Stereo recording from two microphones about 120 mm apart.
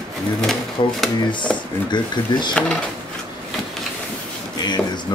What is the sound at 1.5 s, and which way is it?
Speech, 5° left (ahead or behind).